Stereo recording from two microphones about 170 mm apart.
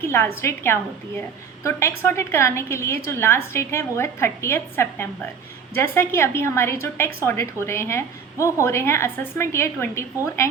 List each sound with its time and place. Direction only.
0.0 s a woman's voice: 15° left (ahead or behind)